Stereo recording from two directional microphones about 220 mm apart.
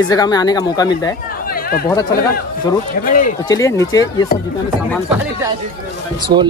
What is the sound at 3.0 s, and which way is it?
Speech, 40° left (ahead or behind).